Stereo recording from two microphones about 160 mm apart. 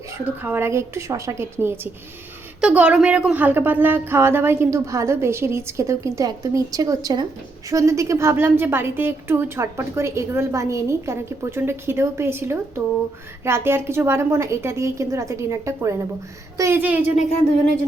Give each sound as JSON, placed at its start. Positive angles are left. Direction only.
{"t": 0.4, "sound": "a woman's voice", "side_deg": -15}